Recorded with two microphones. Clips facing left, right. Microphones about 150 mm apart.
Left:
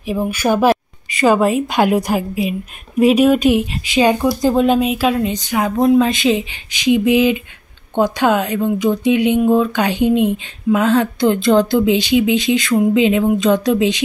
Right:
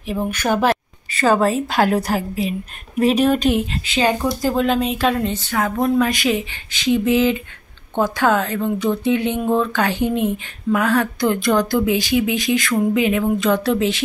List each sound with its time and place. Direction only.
0.0 s speech: 10° left (ahead or behind)